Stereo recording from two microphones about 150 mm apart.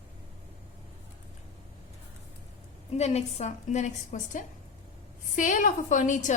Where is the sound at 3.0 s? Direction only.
45° left (ahead or behind).